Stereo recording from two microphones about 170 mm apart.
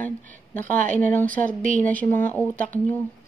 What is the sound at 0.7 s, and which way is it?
Speech, 50° right (ahead or behind).